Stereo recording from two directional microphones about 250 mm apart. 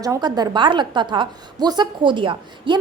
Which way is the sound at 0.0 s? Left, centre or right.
Centre.